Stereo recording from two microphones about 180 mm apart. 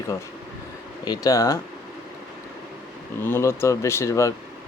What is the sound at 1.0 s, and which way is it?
Speech, 20° left (ahead or behind).